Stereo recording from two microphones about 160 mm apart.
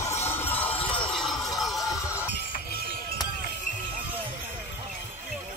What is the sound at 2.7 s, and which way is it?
Music, 85° left.